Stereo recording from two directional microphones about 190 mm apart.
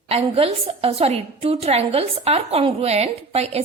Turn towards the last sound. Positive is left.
turn(degrees=-35)  # may be behind; listen again after turning